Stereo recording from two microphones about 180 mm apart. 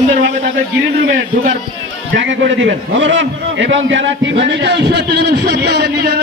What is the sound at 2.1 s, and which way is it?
A man's voice, 90° right.